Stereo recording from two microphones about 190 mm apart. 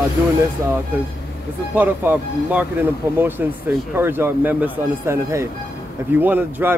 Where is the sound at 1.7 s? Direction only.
10° right (ahead or behind).